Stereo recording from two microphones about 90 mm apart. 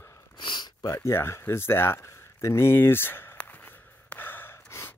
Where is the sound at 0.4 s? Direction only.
60° left (ahead or behind).